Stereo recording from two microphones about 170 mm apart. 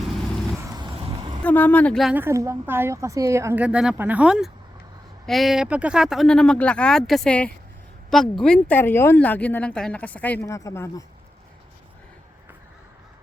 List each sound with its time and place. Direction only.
0.7 s vehicle: 25° right (ahead or behind)
1.5 s speech: 10° left (ahead or behind)
2.1 s speech: 15° right (ahead or behind); by 11.0 s 20° left (ahead or behind)